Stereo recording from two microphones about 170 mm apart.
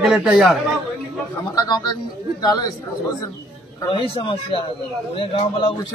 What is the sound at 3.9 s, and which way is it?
A man's voice, 30° left (ahead or behind).